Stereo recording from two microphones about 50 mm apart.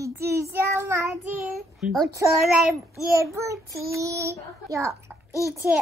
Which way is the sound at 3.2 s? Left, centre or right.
Right.